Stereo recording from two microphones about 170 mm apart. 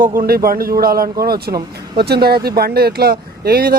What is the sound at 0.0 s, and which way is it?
Speech, 55° right (ahead or behind).